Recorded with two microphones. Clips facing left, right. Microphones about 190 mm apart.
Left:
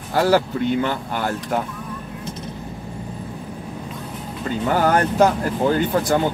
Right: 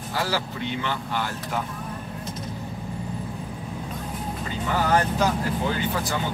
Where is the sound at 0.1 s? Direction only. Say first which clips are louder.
Left 11 dB; 50° left (ahead or behind).